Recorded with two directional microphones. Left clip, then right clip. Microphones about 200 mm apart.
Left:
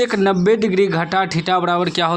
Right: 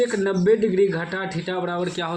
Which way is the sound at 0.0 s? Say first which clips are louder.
Left 5 dB; 45° left (ahead or behind).